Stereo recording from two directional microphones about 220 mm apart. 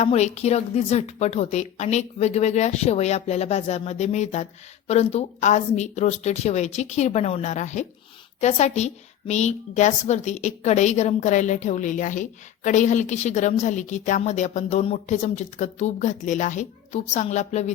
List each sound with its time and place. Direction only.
0.0 s a woman's voice: 30° left (ahead or behind)